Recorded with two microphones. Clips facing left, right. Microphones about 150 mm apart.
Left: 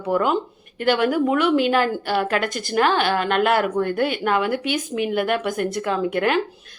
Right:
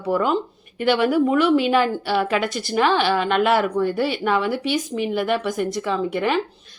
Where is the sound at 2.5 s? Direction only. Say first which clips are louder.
Right 1 dB; 45° left (ahead or behind).